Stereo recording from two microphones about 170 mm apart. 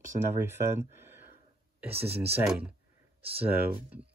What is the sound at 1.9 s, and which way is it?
Speech, 35° right (ahead or behind).